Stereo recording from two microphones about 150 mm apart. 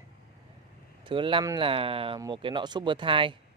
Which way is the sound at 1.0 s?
35° right (ahead or behind).